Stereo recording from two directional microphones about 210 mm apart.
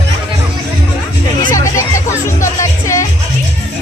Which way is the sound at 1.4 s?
15° left (ahead or behind).